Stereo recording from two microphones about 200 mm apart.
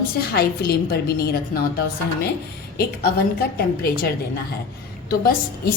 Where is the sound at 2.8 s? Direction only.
50° left (ahead or behind).